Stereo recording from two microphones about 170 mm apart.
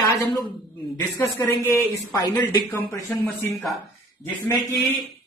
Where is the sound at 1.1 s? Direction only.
15° left (ahead or behind).